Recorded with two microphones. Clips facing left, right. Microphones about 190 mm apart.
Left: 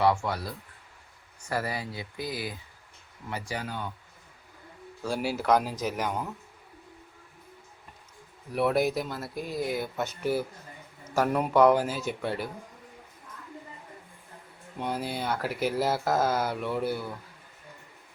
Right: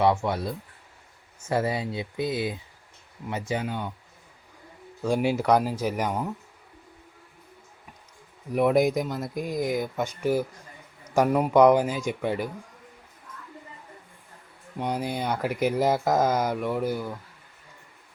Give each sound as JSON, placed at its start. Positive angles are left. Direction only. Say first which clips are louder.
{"t": 0.0, "sound": "speech", "louder": "right 3 dB", "side_deg": -20}
{"t": 5.0, "sound": "speech", "louder": "right 4 dB", "side_deg": -20}
{"t": 8.5, "sound": "speech", "louder": "right 4 dB", "side_deg": -15}
{"t": 14.8, "sound": "speech", "louder": "right 3 dB", "side_deg": -15}